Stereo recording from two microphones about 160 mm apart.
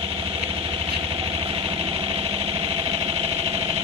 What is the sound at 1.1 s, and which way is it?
Engine, 35° right (ahead or behind).